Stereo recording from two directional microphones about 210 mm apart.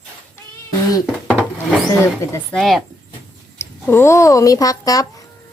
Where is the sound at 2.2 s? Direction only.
10° left (ahead or behind).